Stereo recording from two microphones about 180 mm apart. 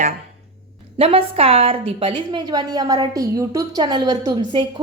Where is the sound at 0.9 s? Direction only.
30° right (ahead or behind).